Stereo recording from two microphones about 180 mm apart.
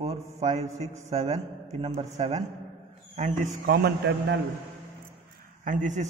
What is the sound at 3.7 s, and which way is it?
Speech, 65° right (ahead or behind).